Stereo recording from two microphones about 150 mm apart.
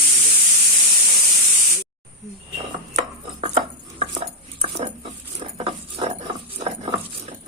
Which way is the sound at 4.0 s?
45° right (ahead or behind).